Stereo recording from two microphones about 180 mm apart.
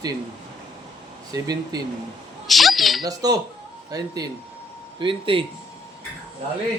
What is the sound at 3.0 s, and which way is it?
Speech, 20° right (ahead or behind).